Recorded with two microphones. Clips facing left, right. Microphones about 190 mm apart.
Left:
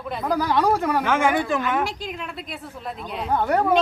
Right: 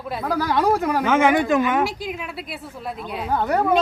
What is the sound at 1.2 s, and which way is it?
Speech, 15° right (ahead or behind).